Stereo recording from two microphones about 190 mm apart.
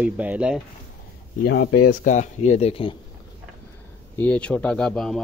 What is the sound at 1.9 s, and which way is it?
Speech, 40° left (ahead or behind).